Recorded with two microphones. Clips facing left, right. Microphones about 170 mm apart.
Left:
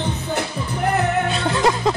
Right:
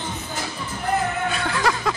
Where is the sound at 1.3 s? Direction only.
25° left (ahead or behind).